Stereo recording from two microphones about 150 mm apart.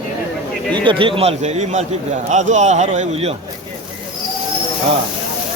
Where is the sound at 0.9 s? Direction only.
35° right (ahead or behind).